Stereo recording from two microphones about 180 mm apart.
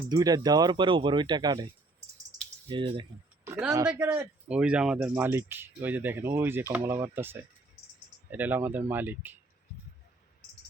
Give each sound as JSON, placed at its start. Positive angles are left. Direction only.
{"t": 0.1, "sound": "speech", "side_deg": -20}
{"t": 3.4, "sound": "speech", "side_deg": -10}